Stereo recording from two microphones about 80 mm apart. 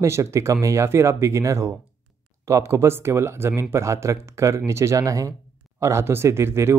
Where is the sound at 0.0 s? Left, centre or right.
Right.